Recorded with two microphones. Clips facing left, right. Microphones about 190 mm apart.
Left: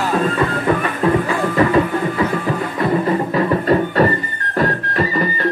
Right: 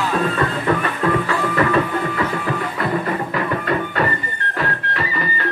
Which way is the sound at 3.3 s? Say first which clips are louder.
Left 7 dB; 35° left (ahead or behind).